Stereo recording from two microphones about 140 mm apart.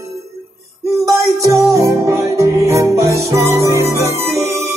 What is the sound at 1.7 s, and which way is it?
Music, 20° right (ahead or behind).